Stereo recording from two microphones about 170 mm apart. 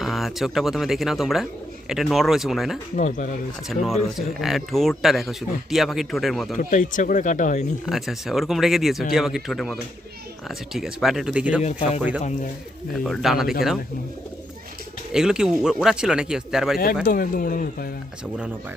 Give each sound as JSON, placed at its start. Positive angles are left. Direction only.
{"t": 0.0, "sound": "speech", "side_deg": 0}
{"t": 2.9, "sound": "speech", "side_deg": 45}
{"t": 3.7, "sound": "speech", "side_deg": 0}
{"t": 6.6, "sound": "speech", "side_deg": 50}
{"t": 7.9, "sound": "speech", "side_deg": 0}
{"t": 15.1, "sound": "speech", "side_deg": -5}
{"t": 16.7, "sound": "speech", "side_deg": 60}